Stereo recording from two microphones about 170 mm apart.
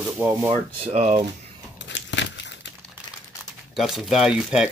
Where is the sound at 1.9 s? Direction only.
90° left.